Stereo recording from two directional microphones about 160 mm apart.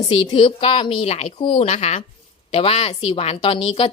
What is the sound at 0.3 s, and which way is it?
A woman's voice, 30° left (ahead or behind).